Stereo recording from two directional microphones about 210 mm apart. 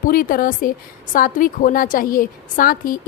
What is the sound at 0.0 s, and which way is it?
A woman's voice, 40° left (ahead or behind).